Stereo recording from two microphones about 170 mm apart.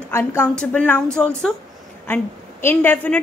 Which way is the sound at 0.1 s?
15° left (ahead or behind).